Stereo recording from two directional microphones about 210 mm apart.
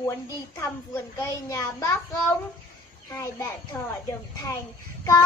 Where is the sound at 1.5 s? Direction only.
15° left (ahead or behind).